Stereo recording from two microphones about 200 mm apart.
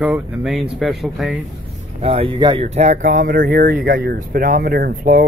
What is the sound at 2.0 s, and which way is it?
Speech, 30° right (ahead or behind).